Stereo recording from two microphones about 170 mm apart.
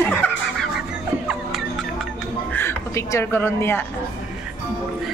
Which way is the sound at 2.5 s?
15° left (ahead or behind).